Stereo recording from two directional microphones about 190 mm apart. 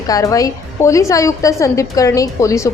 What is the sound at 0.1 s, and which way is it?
A woman's voice, 15° left (ahead or behind).